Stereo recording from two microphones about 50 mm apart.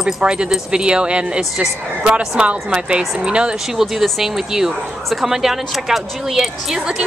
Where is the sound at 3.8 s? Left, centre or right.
Centre.